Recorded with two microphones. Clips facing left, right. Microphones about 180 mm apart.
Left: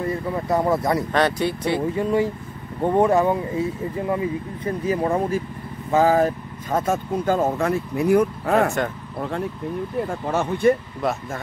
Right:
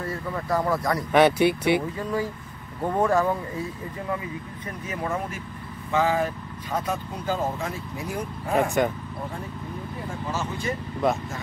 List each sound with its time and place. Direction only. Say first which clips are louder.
0.0 s speech: left 6 dB; 20° left (ahead or behind)
1.1 s speech: right 3 dB; 10° right (ahead or behind)
2.0 s speech: left 7 dB; 25° left (ahead or behind); by 8.7 s 65° left (ahead or behind)
9.9 s speech: left 7 dB; 60° left (ahead or behind)